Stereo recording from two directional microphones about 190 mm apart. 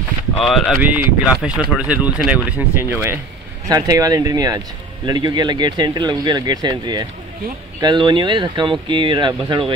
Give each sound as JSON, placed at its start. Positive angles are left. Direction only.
{"t": 0.4, "sound": "speech", "side_deg": 0}